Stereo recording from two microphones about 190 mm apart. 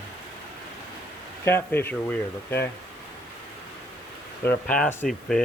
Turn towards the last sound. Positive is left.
turn(degrees=5)  # may be behind; listen again after turning